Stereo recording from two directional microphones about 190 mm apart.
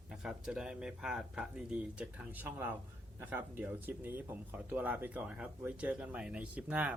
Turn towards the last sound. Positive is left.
turn(degrees=-5)  # may be behind; listen again after turning